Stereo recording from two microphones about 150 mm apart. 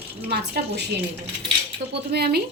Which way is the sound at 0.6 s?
70° right (ahead or behind).